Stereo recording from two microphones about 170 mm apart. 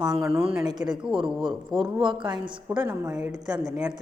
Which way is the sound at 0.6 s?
25° right (ahead or behind).